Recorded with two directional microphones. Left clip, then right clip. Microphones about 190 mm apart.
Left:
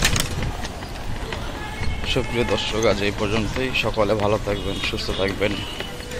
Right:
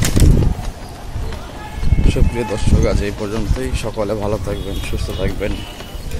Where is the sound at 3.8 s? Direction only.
20° right (ahead or behind).